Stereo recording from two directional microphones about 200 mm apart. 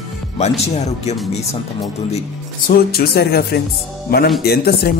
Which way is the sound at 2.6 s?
50° left (ahead or behind).